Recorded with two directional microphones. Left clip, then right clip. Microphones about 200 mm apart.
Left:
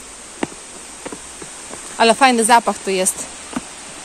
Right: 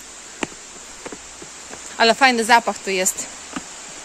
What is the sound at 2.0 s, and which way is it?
Speech, 5° right (ahead or behind).